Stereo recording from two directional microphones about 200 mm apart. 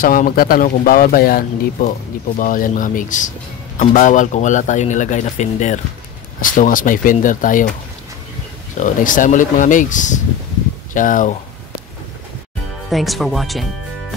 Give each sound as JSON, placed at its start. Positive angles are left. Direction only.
{"t": 0.0, "sound": "speech", "side_deg": 45}
{"t": 8.7, "sound": "speech", "side_deg": 40}
{"t": 12.9, "sound": "speech", "side_deg": 0}